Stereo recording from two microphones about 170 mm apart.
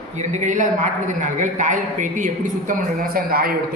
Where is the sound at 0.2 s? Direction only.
45° right (ahead or behind).